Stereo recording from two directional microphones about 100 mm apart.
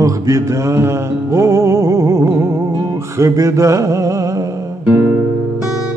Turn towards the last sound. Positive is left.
turn(degrees=-15)  # may be behind; listen again after turning